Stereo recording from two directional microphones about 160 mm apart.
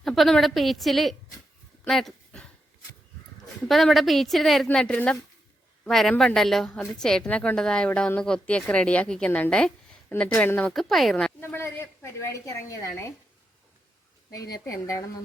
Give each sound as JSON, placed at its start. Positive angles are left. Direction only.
{"t": 0.0, "sound": "a woman's voice", "side_deg": 0}
{"t": 1.8, "sound": "a sound", "side_deg": 0}
{"t": 3.4, "sound": "a woman's voice", "side_deg": 0}
{"t": 11.5, "sound": "a woman's voice", "side_deg": 15}
{"t": 14.5, "sound": "speech", "side_deg": 20}